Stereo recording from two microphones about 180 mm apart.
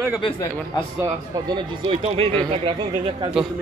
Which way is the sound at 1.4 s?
25° right (ahead or behind).